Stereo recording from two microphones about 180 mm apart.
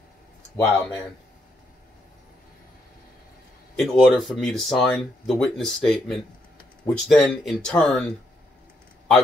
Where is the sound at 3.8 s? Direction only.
Centre (ahead or behind).